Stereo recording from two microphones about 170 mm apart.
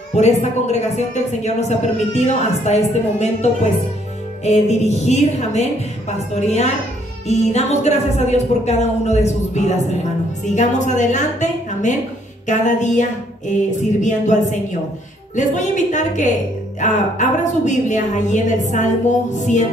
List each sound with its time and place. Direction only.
0.1 s a man's voice: 40° left (ahead or behind)